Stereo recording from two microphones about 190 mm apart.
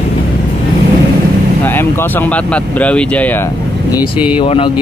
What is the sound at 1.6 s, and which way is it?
Speech, 10° left (ahead or behind).